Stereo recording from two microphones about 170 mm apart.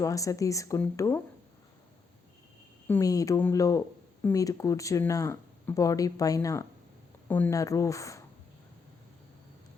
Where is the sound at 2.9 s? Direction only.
20° left (ahead or behind).